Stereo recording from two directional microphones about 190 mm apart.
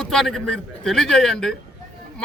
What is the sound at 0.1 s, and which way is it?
Speech, centre (ahead or behind).